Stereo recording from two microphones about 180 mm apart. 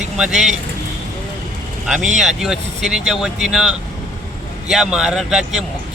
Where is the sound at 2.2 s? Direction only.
Centre (ahead or behind).